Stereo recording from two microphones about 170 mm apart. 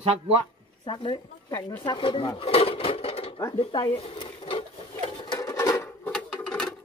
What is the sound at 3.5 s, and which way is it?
Sewing machine, 30° left (ahead or behind).